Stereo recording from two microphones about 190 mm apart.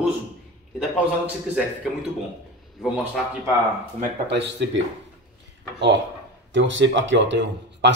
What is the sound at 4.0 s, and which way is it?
Speech, 65° right (ahead or behind).